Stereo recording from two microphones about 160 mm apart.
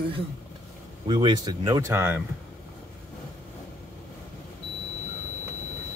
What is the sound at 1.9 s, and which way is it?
Speech, 15° right (ahead or behind).